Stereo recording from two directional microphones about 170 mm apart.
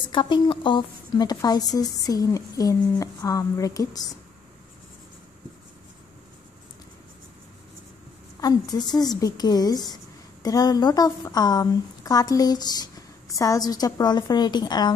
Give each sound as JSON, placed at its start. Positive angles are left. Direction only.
{"t": 0.1, "sound": "speech", "side_deg": 30}
{"t": 8.4, "sound": "speech", "side_deg": 20}